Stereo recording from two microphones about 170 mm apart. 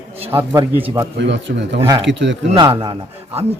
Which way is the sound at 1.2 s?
90° right.